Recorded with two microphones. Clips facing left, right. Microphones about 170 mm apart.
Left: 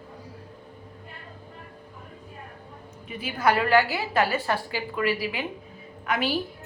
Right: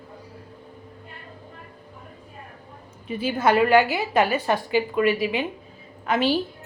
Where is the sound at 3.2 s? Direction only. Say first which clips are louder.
Right 4 dB; 25° right (ahead or behind).